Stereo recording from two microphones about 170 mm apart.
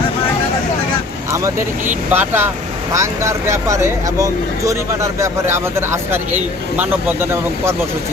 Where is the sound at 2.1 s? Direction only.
10° right (ahead or behind).